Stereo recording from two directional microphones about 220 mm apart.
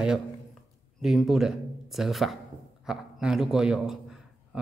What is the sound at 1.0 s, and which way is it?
A man's voice, centre (ahead or behind).